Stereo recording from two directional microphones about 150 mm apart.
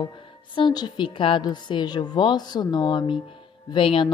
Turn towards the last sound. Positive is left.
turn(degrees=35)  # may be behind; listen again after turning